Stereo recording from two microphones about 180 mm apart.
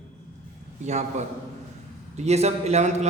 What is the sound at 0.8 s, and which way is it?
A man's voice, 40° right (ahead or behind).